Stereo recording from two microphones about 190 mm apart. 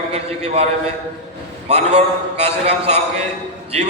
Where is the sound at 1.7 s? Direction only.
35° right (ahead or behind).